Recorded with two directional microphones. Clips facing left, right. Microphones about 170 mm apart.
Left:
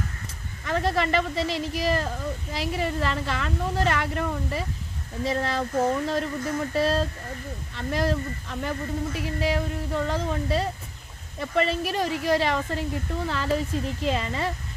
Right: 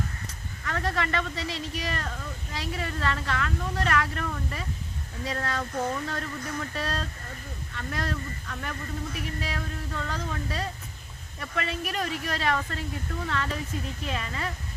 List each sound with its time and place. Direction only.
0.6 s speech: 25° left (ahead or behind)